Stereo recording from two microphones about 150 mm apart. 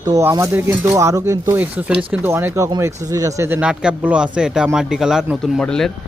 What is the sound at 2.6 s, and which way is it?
Speech, 25° right (ahead or behind).